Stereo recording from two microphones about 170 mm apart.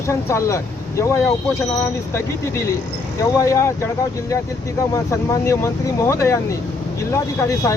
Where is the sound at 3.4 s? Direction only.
15° left (ahead or behind).